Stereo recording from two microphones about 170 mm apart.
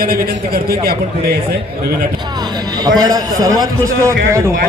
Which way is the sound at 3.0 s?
20° right (ahead or behind).